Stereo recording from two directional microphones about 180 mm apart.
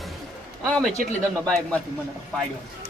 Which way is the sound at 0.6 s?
Centre (ahead or behind).